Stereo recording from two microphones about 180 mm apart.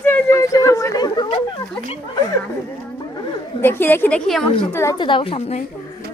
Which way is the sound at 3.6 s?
10° left (ahead or behind).